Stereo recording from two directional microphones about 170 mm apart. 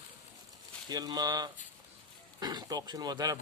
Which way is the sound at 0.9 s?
25° right (ahead or behind).